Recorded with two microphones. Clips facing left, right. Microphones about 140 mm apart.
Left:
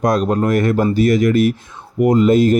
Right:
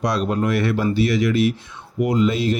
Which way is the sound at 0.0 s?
45° left (ahead or behind).